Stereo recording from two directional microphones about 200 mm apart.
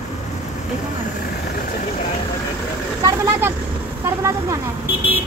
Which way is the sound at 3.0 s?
15° right (ahead or behind).